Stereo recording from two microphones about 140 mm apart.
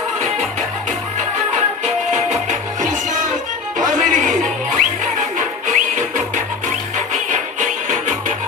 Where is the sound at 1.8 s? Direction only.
60° right (ahead or behind).